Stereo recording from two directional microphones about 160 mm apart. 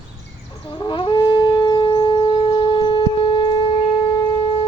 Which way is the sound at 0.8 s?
25° left (ahead or behind).